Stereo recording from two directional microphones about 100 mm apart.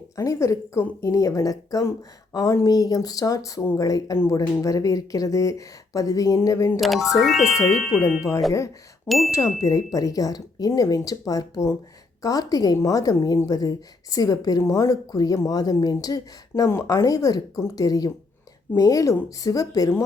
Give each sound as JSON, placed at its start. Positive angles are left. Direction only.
{"t": 0.2, "sound": "a woman's voice", "side_deg": 30}
{"t": 6.7, "sound": "speech", "side_deg": 0}
{"t": 9.0, "sound": "speech", "side_deg": 0}
{"t": 9.3, "sound": "speech", "side_deg": 30}